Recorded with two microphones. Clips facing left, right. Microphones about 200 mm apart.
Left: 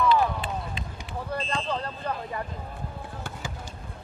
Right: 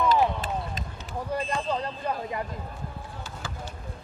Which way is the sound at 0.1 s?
40° right (ahead or behind).